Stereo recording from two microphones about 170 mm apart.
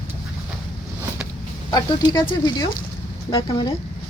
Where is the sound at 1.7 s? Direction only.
25° left (ahead or behind).